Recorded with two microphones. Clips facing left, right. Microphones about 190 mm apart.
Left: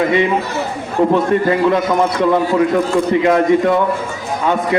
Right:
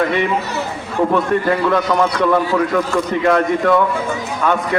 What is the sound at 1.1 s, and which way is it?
A man's voice, 20° left (ahead or behind).